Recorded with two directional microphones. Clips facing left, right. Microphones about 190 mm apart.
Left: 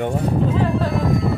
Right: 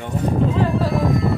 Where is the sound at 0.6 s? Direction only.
Centre (ahead or behind).